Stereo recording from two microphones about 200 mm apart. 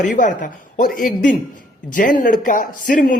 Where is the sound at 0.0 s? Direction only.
40° left (ahead or behind).